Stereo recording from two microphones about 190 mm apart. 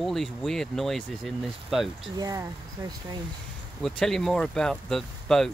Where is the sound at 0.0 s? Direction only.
Centre (ahead or behind).